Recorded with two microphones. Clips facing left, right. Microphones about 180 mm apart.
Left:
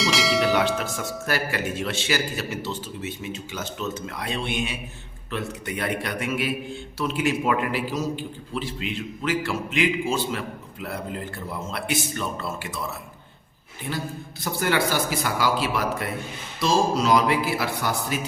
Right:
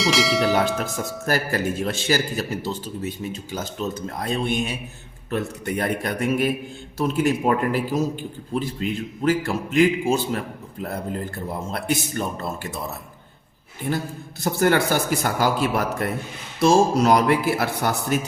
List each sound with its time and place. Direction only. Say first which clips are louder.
0.0 s bell: right 2 dB; centre (ahead or behind)
0.9 s a man's voice: right 3 dB; 40° right (ahead or behind)
13.9 s a man's voice: right 4 dB; 40° right (ahead or behind)